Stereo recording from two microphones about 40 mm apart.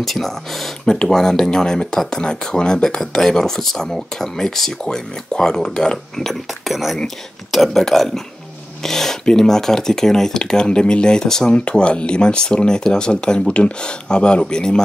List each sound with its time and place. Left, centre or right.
0.0 s speech: centre
4.8 s speech: left
6.6 s speech: centre
11.7 s speech: left